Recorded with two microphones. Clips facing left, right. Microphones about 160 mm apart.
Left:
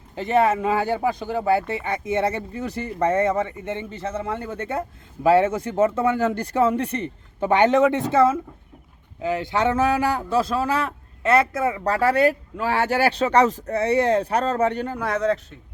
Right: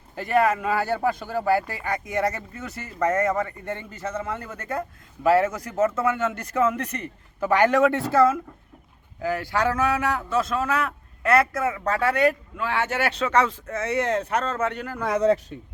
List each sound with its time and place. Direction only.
0.2 s speech: 25° left (ahead or behind)